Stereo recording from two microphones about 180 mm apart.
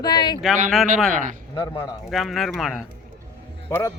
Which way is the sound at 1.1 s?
45° right (ahead or behind).